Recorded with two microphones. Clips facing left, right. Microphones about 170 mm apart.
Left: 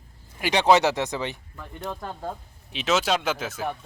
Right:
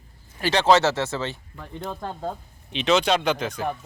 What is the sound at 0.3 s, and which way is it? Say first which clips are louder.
Speech: right 1 dB; 15° left (ahead or behind).